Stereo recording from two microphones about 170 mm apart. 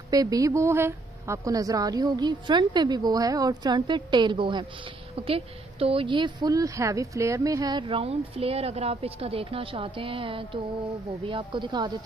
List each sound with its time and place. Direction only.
0.1 s a woman's voice: 20° right (ahead or behind)